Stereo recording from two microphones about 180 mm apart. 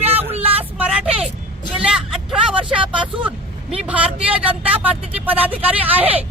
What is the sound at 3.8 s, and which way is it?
Speech, 5° right (ahead or behind).